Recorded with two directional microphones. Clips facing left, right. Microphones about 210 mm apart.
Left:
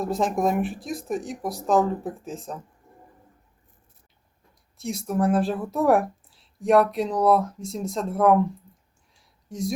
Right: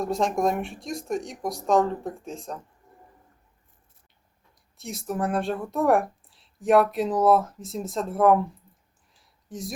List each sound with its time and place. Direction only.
0.0 s speech: centre (ahead or behind)
4.8 s speech: centre (ahead or behind)
9.1 s a sound: centre (ahead or behind)